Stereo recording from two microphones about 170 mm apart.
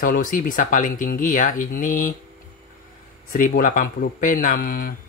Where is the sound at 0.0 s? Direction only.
55° left (ahead or behind).